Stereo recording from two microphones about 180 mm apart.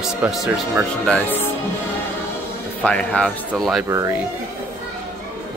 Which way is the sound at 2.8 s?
5° left (ahead or behind).